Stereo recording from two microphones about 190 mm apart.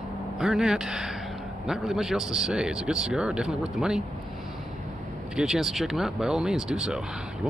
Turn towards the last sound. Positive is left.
turn(degrees=-5)  # may be behind; listen again after turning